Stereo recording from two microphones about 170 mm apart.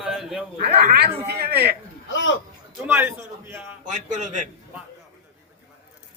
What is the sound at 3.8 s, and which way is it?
Speech, 45° right (ahead or behind).